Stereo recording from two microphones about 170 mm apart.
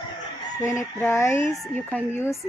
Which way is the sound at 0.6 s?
15° left (ahead or behind).